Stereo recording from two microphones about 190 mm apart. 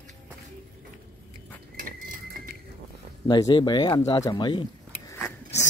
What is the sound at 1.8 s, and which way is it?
Cutlery, 50° right (ahead or behind).